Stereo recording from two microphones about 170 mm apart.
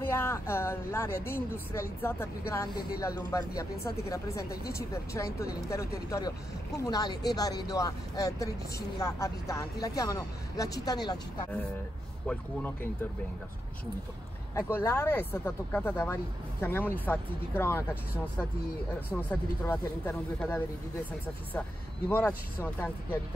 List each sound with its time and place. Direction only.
0.0 s speech: 15° left (ahead or behind)
12.3 s speech: 10° left (ahead or behind)
14.5 s speech: 15° left (ahead or behind)
19.2 s speech: 15° left (ahead or behind)
22.1 s speech: 15° left (ahead or behind)